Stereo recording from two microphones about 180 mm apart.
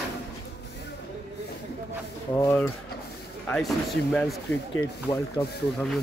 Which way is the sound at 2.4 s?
15° left (ahead or behind).